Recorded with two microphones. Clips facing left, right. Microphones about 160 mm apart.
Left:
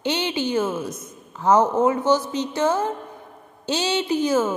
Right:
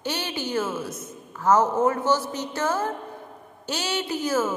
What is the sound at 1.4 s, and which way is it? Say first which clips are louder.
A woman's voice: left 2 dB; 15° left (ahead or behind).